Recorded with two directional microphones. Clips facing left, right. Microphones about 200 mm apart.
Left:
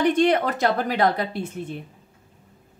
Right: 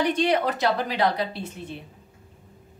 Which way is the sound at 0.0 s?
50° left (ahead or behind).